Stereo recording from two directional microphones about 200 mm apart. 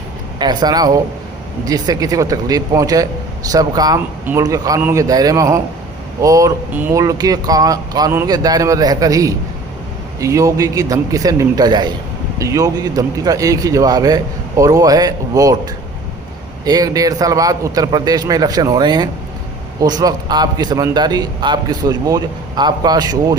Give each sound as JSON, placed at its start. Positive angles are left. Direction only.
{"t": 0.3, "sound": "a man's voice", "side_deg": -20}
{"t": 16.6, "sound": "a man's voice", "side_deg": -20}